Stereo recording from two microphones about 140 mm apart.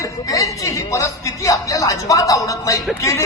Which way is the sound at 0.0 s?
25° left (ahead or behind).